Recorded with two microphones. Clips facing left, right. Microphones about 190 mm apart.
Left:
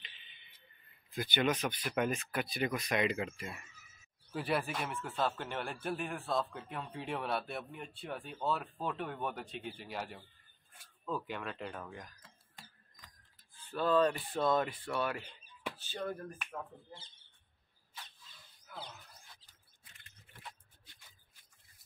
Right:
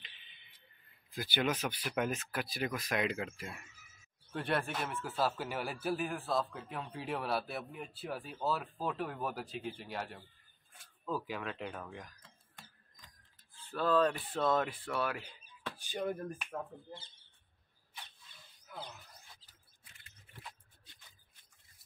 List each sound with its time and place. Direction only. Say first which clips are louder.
1.1 s speech: left 2 dB; 5° right (ahead or behind)
13.7 s speech: even; centre (ahead or behind)
15.8 s speech: right 4 dB; 15° right (ahead or behind)